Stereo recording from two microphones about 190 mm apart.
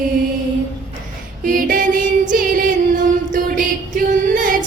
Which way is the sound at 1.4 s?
45° right (ahead or behind).